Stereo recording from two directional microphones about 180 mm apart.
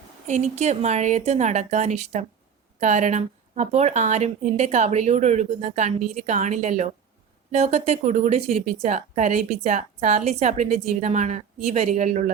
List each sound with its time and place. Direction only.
0.3 s a woman's voice: 40° right (ahead or behind)